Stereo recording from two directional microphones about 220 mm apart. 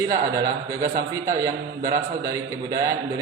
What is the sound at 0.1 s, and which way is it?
A man's voice, 15° right (ahead or behind).